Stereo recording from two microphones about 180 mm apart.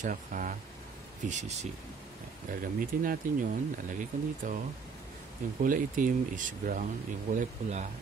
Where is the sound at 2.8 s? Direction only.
50° right (ahead or behind).